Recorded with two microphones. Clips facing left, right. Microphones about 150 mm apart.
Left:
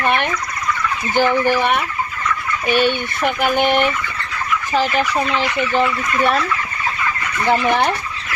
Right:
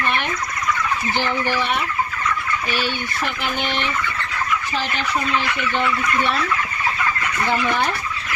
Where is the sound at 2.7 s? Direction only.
55° left (ahead or behind).